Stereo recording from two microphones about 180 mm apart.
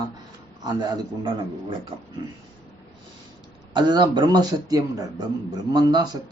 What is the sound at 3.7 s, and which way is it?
Speech, 25° right (ahead or behind).